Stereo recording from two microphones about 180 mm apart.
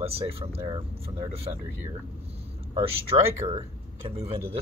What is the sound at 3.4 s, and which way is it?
Speech, 30° right (ahead or behind).